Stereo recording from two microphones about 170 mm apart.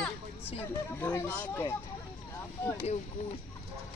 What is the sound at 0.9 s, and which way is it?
Speech, 15° left (ahead or behind).